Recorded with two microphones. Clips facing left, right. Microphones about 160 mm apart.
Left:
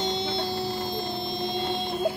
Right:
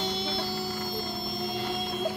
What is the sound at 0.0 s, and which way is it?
Music, 20° left (ahead or behind).